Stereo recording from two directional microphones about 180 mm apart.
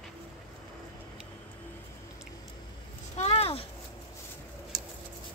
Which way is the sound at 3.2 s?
35° left (ahead or behind).